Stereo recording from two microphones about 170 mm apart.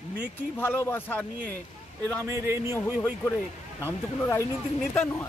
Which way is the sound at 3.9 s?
20° left (ahead or behind).